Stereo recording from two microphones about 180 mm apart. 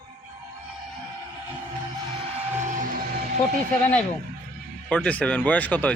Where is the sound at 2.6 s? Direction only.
45° right (ahead or behind).